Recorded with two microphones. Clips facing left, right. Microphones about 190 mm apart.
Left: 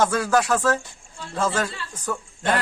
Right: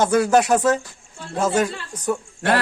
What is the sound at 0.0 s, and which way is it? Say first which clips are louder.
A man's voice: right 4 dB; 20° right (ahead or behind).